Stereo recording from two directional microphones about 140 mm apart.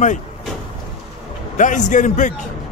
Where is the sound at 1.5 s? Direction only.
60° left (ahead or behind).